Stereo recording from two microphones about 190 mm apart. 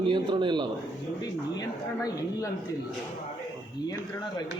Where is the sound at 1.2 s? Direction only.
20° left (ahead or behind).